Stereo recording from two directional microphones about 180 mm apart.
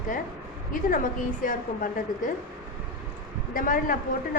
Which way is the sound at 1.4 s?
50° left (ahead or behind).